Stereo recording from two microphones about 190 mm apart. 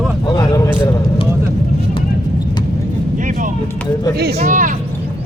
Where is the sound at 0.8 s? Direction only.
25° left (ahead or behind).